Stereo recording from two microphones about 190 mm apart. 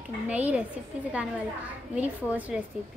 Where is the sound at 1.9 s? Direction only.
10° right (ahead or behind).